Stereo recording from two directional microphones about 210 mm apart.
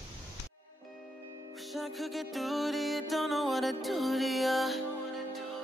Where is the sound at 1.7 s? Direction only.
Centre (ahead or behind).